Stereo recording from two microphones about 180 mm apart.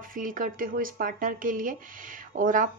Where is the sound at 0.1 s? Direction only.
50° right (ahead or behind).